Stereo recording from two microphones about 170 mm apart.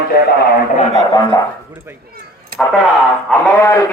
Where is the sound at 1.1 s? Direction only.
20° left (ahead or behind).